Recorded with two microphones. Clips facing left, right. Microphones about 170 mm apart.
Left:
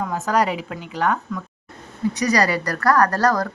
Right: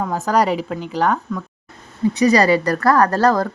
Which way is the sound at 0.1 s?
35° right (ahead or behind).